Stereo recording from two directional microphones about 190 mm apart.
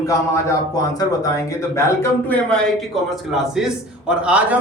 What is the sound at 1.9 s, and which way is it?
Speech, 5° left (ahead or behind).